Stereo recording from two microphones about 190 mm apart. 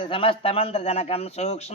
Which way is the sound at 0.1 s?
30° left (ahead or behind).